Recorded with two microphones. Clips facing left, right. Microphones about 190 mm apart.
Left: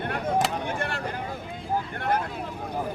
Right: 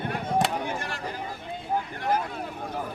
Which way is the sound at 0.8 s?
60° left (ahead or behind).